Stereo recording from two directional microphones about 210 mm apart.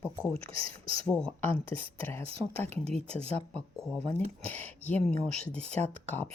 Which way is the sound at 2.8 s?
30° right (ahead or behind).